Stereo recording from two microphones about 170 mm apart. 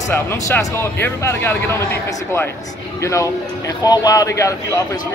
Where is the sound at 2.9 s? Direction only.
15° left (ahead or behind).